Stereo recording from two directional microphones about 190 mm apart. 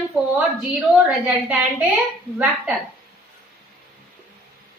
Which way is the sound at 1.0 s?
5° right (ahead or behind).